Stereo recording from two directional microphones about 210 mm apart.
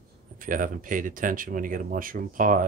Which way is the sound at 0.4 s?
40° right (ahead or behind).